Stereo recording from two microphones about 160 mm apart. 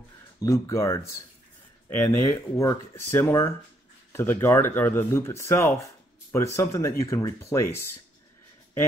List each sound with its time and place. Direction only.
0.4 s speech: 20° left (ahead or behind)